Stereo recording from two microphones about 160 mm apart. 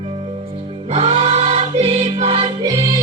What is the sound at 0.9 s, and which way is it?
Music, 40° right (ahead or behind).